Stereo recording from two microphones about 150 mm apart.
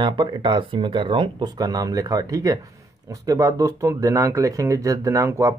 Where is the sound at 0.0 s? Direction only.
30° right (ahead or behind).